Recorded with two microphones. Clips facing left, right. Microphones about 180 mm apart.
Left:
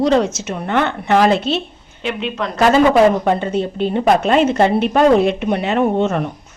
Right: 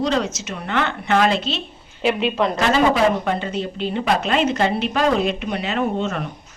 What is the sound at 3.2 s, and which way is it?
Speech, 50° left (ahead or behind).